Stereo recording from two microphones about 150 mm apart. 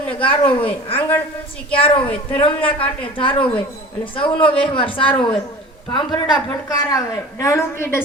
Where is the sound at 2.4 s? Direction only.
35° left (ahead or behind).